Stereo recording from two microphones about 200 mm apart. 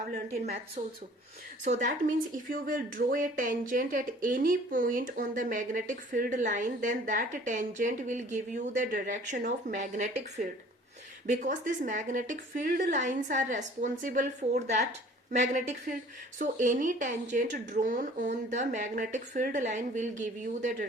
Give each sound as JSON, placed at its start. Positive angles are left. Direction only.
{"t": 0.8, "sound": "speech", "side_deg": -35}